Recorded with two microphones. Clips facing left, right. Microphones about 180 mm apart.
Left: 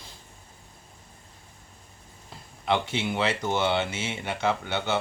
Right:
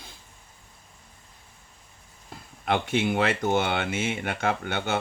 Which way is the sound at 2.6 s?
50° right (ahead or behind).